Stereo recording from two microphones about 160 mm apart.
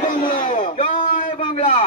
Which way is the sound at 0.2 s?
55° left (ahead or behind).